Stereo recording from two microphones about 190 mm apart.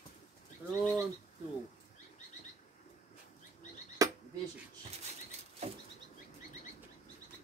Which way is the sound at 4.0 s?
15° right (ahead or behind).